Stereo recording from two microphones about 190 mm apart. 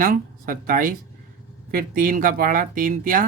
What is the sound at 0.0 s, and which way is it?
Speech, 50° right (ahead or behind).